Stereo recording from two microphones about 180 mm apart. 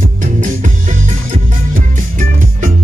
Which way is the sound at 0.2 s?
45° right (ahead or behind).